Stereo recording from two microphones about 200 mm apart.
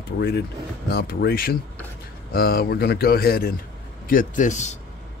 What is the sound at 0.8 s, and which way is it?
Speech, 50° left (ahead or behind).